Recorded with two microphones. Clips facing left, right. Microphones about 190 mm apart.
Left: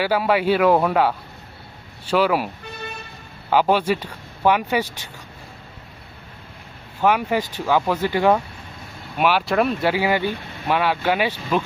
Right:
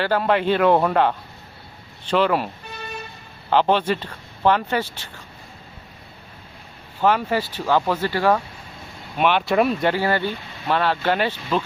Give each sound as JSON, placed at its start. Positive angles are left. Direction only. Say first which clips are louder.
{"t": 0.0, "sound": "speech", "louder": "left 1 dB", "side_deg": 10}
{"t": 3.5, "sound": "speech", "louder": "left 1 dB", "side_deg": 10}
{"t": 7.0, "sound": "speech", "louder": "even", "side_deg": 10}
{"t": 9.1, "sound": "speech", "louder": "even", "side_deg": 5}
{"t": 9.9, "sound": "speech", "louder": "left 1 dB", "side_deg": 10}